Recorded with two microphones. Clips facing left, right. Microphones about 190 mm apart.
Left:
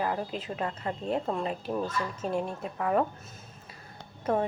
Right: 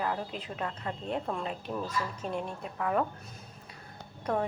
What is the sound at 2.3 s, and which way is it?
Speech, 40° left (ahead or behind).